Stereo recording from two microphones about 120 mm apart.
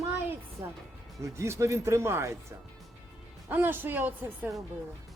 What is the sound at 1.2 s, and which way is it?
Speech, 25° right (ahead or behind).